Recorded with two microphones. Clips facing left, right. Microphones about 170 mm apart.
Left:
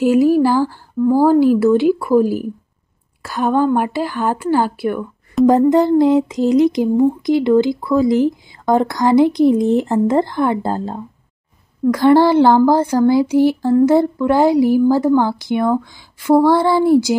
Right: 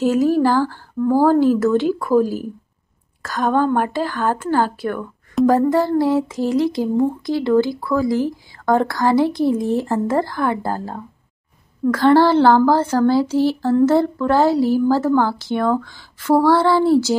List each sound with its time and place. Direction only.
0.0 s speech: 10° left (ahead or behind)
5.5 s a sound: 20° left (ahead or behind)
11.8 s speech: 15° left (ahead or behind)